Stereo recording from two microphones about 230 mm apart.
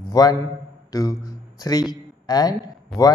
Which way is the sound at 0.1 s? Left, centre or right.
Centre.